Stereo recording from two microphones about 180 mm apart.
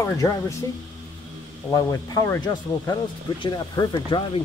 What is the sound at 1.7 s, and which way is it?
Speech, 20° left (ahead or behind).